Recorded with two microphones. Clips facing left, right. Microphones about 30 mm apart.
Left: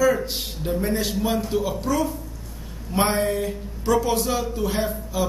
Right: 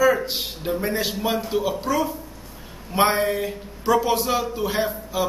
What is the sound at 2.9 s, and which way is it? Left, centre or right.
A man's voice, centre.